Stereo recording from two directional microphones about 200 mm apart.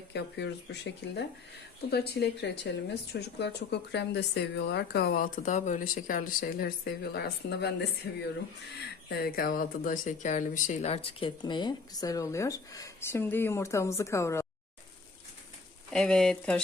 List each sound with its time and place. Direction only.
0.1 s speech: 60° left (ahead or behind); by 14.4 s 15° left (ahead or behind)
15.9 s speech: 5° left (ahead or behind)